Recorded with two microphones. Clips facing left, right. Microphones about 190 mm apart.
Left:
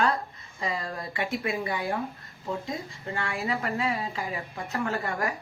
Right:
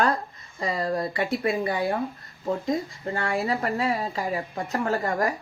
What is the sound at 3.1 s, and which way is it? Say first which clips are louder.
Speech: right 4 dB; 35° right (ahead or behind).